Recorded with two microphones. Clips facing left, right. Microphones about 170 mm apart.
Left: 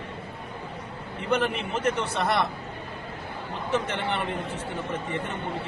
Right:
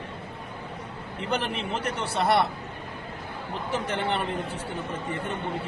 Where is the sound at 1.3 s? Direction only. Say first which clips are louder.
Left 3 dB; 35° right (ahead or behind).